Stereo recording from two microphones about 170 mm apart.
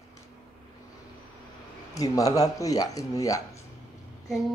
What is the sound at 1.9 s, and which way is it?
Speech, 20° left (ahead or behind).